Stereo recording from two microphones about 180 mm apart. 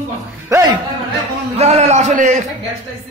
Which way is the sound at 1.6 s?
40° right (ahead or behind).